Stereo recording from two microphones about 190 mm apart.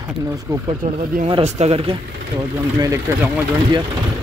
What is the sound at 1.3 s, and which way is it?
Speech, 30° right (ahead or behind).